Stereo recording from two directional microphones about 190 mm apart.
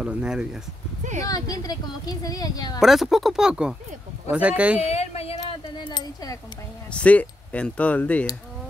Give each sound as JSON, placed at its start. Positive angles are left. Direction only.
{"t": 0.0, "sound": "speech", "side_deg": -5}
{"t": 1.3, "sound": "a woman's voice", "side_deg": 20}
{"t": 2.8, "sound": "speech", "side_deg": 0}
{"t": 4.7, "sound": "speech", "side_deg": 35}
{"t": 6.9, "sound": "speech", "side_deg": 5}